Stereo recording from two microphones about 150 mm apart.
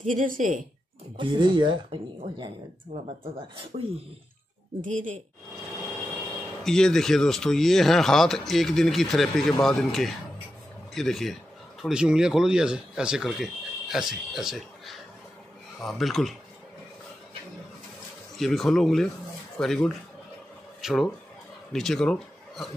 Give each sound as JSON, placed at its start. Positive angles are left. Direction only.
{"t": 0.0, "sound": "a woman's voice", "side_deg": -60}
{"t": 1.1, "sound": "speech", "side_deg": -35}
{"t": 3.7, "sound": "a woman's voice", "side_deg": -55}
{"t": 6.6, "sound": "speech", "side_deg": 5}
{"t": 18.4, "sound": "speech", "side_deg": 0}